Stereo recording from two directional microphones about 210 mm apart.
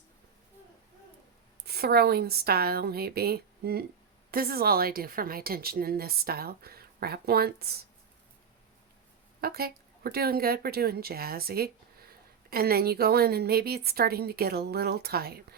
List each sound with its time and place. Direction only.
1.6 s speech: 50° right (ahead or behind)
9.4 s speech: 45° right (ahead or behind)